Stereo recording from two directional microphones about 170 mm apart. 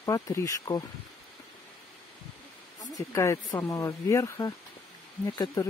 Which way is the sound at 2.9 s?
15° left (ahead or behind).